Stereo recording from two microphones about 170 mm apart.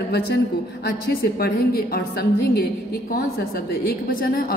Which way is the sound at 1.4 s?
65° left (ahead or behind).